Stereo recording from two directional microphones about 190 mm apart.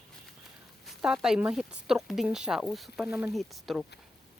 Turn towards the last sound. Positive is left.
turn(degrees=0)  # may be behind; listen again after turning